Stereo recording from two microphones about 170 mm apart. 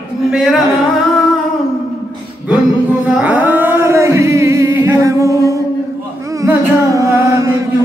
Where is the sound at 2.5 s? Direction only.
5° right (ahead or behind).